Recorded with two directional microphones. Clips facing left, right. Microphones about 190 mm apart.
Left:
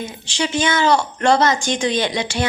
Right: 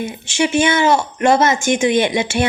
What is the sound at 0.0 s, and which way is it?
A woman's voice, 25° right (ahead or behind).